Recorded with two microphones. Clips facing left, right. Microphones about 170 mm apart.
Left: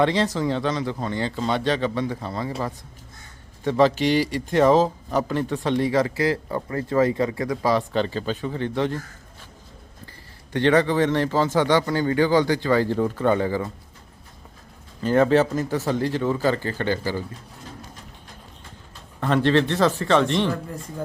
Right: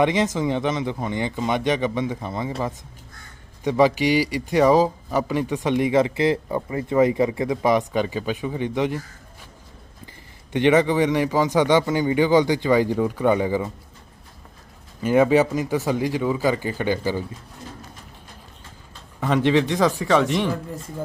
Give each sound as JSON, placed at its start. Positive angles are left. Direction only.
{"t": 0.0, "sound": "a man's voice", "side_deg": -20}
{"t": 3.6, "sound": "a man's voice", "side_deg": -15}
{"t": 10.1, "sound": "a man's voice", "side_deg": -20}
{"t": 15.0, "sound": "a man's voice", "side_deg": -10}
{"t": 19.2, "sound": "a man's voice", "side_deg": -10}